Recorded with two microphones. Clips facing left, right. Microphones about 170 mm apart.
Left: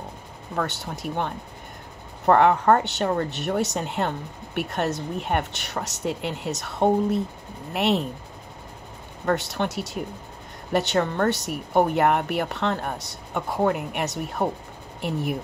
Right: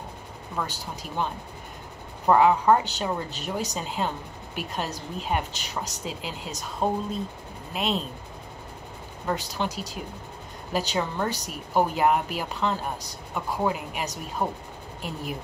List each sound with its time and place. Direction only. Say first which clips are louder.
0.6 s speech: left 4 dB; 70° left (ahead or behind)
9.2 s speech: left 4 dB; 65° left (ahead or behind)